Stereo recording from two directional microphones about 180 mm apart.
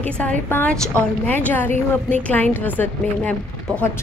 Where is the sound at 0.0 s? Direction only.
10° left (ahead or behind).